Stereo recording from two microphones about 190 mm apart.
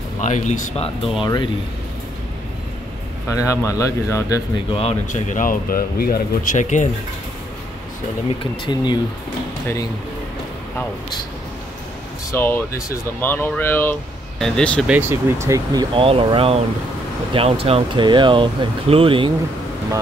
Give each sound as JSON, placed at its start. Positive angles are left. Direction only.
{"t": 0.2, "sound": "speech", "side_deg": 40}
{"t": 1.2, "sound": "speech", "side_deg": 25}
{"t": 3.3, "sound": "speech", "side_deg": 15}
{"t": 4.7, "sound": "speech", "side_deg": 35}
{"t": 12.3, "sound": "speech", "side_deg": 10}
{"t": 14.9, "sound": "speech", "side_deg": -10}